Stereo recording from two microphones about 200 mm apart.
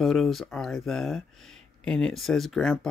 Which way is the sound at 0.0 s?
Centre (ahead or behind).